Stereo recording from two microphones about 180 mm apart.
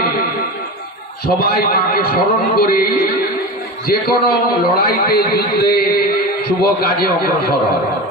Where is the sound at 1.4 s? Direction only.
60° left (ahead or behind).